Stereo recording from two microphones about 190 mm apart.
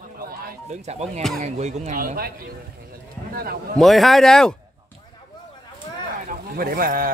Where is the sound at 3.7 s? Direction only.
Centre (ahead or behind).